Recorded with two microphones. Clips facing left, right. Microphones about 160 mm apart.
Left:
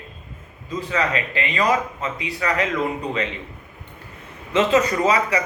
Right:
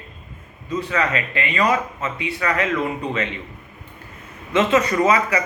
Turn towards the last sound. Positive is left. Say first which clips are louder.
# right 1 dB
turn(degrees=30)  # may be behind; listen again after turning